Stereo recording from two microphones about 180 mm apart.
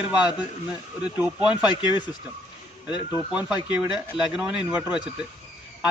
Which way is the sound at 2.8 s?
25° left (ahead or behind).